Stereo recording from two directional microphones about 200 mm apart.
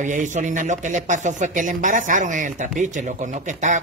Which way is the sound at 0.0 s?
40° right (ahead or behind).